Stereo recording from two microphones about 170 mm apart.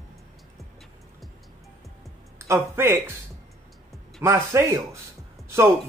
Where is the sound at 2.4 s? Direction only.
15° right (ahead or behind).